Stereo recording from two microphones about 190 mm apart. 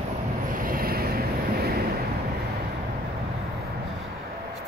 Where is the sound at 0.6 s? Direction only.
50° right (ahead or behind).